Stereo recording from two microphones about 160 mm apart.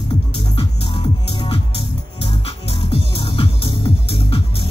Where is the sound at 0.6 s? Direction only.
30° left (ahead or behind).